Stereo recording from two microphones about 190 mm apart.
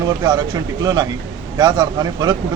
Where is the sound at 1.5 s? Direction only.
20° right (ahead or behind).